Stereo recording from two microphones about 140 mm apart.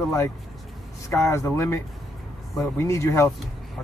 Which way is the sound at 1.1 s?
20° left (ahead or behind).